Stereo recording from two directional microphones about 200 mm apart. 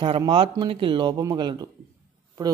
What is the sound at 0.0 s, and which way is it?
A woman's voice, 25° right (ahead or behind).